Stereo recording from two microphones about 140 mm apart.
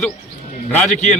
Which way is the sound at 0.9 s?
55° left (ahead or behind).